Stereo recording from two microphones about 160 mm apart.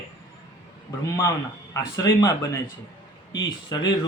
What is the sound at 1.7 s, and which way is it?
A man's voice, 20° left (ahead or behind).